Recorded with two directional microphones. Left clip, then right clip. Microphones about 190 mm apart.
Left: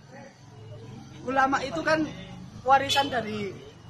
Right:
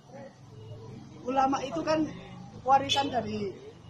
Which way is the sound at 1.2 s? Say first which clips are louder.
Left 3 dB; centre (ahead or behind).